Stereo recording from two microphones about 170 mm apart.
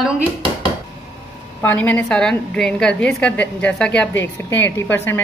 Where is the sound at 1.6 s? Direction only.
10° left (ahead or behind).